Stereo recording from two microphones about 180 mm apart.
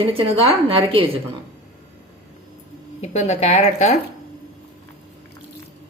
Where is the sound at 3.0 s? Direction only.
40° left (ahead or behind).